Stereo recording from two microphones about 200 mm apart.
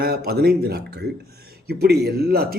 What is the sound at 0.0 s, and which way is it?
A man's voice, 50° right (ahead or behind).